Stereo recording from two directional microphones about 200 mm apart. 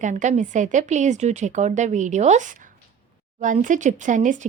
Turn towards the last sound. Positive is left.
turn(degrees=-40)  # may be behind; listen again after turning